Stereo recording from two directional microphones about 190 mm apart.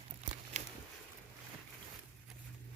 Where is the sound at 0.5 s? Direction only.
40° right (ahead or behind).